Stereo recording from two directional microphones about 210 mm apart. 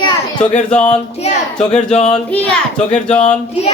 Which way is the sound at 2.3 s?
5° left (ahead or behind).